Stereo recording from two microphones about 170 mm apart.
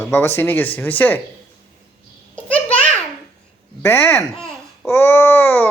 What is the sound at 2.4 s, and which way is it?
Babbling, 10° left (ahead or behind).